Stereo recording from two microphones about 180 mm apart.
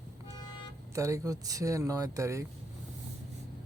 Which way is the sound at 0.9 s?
15° right (ahead or behind).